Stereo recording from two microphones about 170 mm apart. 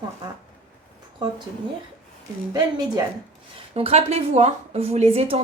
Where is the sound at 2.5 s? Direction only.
20° right (ahead or behind).